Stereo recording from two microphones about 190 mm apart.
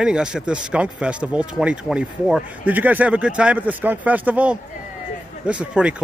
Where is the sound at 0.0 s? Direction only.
5° right (ahead or behind).